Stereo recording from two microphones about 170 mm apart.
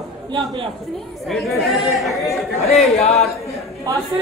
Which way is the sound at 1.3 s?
Centre (ahead or behind).